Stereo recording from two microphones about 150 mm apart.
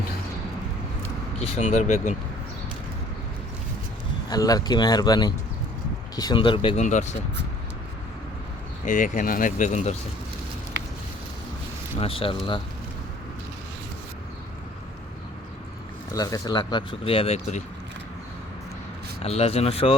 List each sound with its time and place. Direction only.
1.5 s speech: 45° left (ahead or behind)
4.3 s speech: 25° left (ahead or behind)
6.7 s speech: 50° left (ahead or behind)
8.9 s speech: 60° left (ahead or behind)
11.9 s speech: 40° left (ahead or behind)
16.1 s speech: 25° left (ahead or behind); by 17.6 s 40° left (ahead or behind)
19.2 s speech: 45° left (ahead or behind)